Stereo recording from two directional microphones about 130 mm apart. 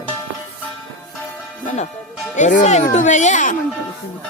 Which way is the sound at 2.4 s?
70° left (ahead or behind).